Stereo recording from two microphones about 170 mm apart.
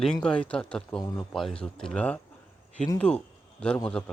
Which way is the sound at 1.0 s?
20° left (ahead or behind).